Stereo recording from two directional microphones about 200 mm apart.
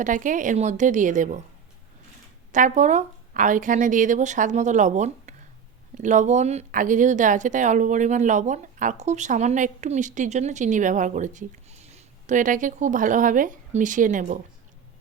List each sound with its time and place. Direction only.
0.0 s speech: 40° right (ahead or behind)
2.5 s speech: 40° right (ahead or behind)